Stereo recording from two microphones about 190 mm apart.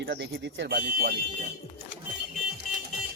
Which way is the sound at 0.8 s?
50° right (ahead or behind).